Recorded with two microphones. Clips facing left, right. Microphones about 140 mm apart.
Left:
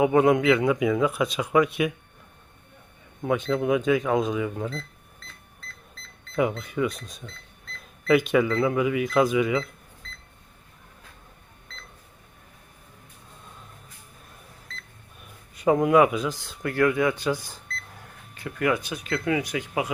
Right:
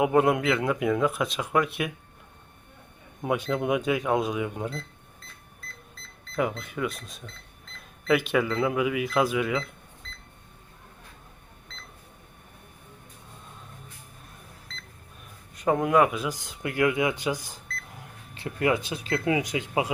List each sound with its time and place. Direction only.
0.0 s speech: centre (ahead or behind)
3.2 s speech: 10° right (ahead or behind)
6.3 s speech: centre (ahead or behind)
15.5 s speech: centre (ahead or behind)
16.3 s speech: 15° right (ahead or behind)